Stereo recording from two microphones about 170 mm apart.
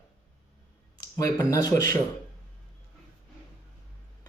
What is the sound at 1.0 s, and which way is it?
Speech, 20° left (ahead or behind).